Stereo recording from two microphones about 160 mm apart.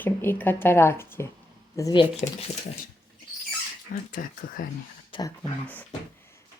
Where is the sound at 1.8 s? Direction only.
25° left (ahead or behind).